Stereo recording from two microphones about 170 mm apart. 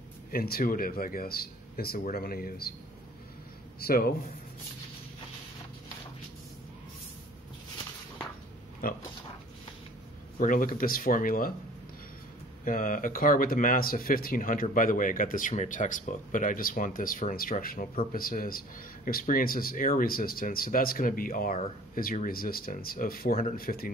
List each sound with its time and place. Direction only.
0.3 s speech: 60° left (ahead or behind)
3.8 s speech: 65° left (ahead or behind)
8.8 s speech: 55° left (ahead or behind)
10.4 s speech: 55° left (ahead or behind)
12.6 s speech: 55° left (ahead or behind)